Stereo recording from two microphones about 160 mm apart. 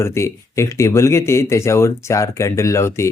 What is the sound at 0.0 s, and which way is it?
Speech, 15° left (ahead or behind).